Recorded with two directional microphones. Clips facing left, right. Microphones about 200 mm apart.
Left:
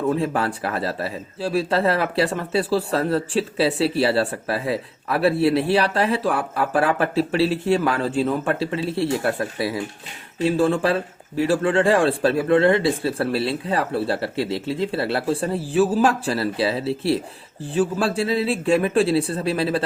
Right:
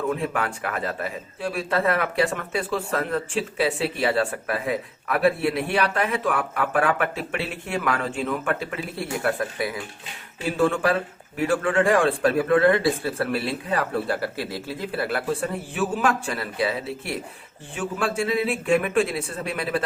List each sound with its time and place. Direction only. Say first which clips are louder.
0.1 s speech: left 4 dB; 30° left (ahead or behind)